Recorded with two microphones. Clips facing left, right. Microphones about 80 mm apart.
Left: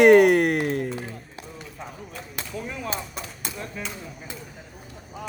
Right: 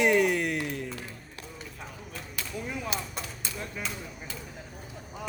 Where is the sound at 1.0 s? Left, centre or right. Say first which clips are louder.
Left 6 dB; left.